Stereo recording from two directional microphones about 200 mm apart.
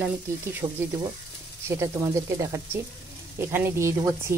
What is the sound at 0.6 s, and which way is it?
Speech, 20° right (ahead or behind).